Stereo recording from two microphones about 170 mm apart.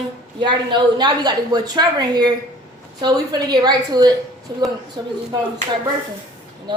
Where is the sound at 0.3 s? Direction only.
25° right (ahead or behind).